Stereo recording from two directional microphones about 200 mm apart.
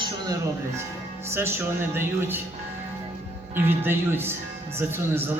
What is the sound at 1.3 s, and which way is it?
A man's voice, 10° right (ahead or behind).